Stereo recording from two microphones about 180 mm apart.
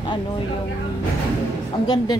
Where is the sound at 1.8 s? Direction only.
25° left (ahead or behind).